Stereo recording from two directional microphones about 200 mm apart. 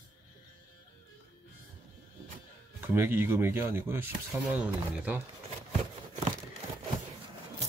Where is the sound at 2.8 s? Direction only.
10° right (ahead or behind).